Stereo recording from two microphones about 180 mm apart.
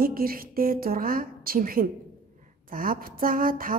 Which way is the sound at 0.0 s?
55° right (ahead or behind).